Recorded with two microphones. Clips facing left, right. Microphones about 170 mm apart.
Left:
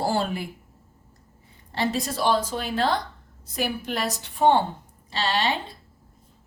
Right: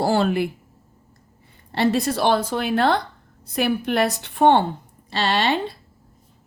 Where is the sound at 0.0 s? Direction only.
70° right (ahead or behind).